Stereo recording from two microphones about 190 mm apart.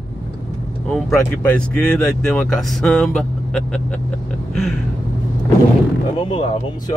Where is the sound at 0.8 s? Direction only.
5° left (ahead or behind).